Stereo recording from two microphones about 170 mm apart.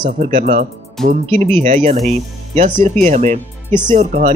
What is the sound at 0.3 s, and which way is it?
Speech, 35° right (ahead or behind).